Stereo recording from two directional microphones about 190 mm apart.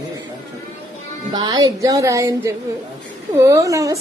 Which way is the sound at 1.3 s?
20° right (ahead or behind).